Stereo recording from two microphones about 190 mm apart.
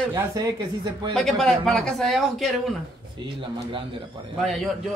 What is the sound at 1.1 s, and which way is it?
Speech, 5° left (ahead or behind).